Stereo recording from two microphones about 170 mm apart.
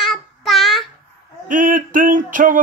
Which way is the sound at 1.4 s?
50° right (ahead or behind).